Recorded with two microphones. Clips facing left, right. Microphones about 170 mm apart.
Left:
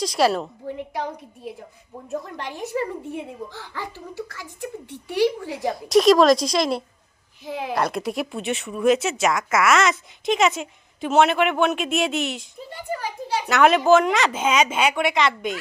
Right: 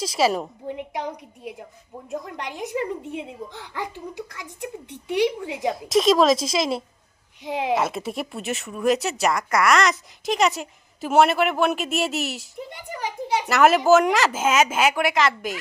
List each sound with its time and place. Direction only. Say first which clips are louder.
0.0 s speech: left 1 dB; 5° right (ahead or behind)
0.4 s speech: even; 15° right (ahead or behind)
5.7 s speech: left 4 dB; centre (ahead or behind)
7.4 s speech: right 3 dB; 75° right (ahead or behind)
7.8 s speech: left 2 dB; centre (ahead or behind)
12.5 s a child's voice: left 3 dB; 20° right (ahead or behind)
13.5 s speech: even; 5° right (ahead or behind)